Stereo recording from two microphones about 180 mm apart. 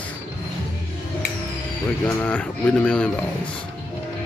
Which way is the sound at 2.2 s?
10° left (ahead or behind).